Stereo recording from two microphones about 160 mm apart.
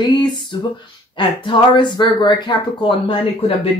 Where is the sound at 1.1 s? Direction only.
30° left (ahead or behind).